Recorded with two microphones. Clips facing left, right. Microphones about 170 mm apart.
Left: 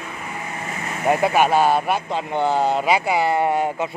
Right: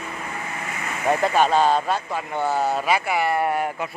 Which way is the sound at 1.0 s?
10° left (ahead or behind).